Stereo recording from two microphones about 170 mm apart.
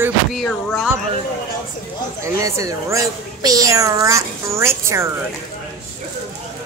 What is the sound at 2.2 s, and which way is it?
Speech, 20° right (ahead or behind).